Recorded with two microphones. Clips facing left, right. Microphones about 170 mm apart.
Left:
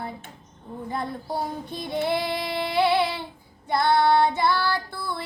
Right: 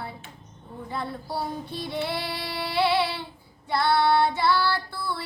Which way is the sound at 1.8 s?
50° left (ahead or behind).